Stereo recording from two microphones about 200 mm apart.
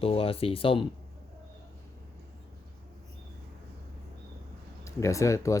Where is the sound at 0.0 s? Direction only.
30° left (ahead or behind).